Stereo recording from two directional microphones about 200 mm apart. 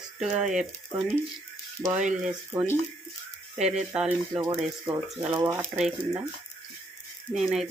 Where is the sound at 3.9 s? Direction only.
5° right (ahead or behind).